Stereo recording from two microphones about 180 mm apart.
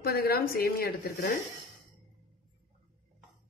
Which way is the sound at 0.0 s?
60° left (ahead or behind).